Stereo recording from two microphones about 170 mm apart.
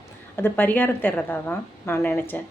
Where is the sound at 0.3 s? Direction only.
10° left (ahead or behind).